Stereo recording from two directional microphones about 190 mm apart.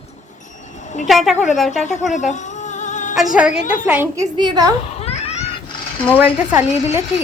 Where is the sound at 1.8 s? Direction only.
40° left (ahead or behind).